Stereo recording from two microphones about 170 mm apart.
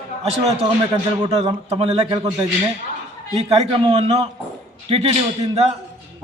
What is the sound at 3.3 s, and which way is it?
Speech, 35° right (ahead or behind).